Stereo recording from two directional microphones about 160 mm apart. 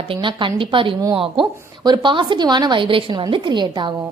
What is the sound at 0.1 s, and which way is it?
A woman's voice, 30° right (ahead or behind).